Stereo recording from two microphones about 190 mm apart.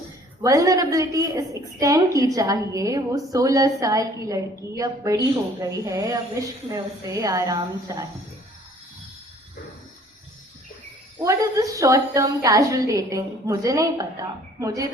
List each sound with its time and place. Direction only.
0.4 s a woman's voice: 20° right (ahead or behind)
11.2 s a woman's voice: 15° right (ahead or behind)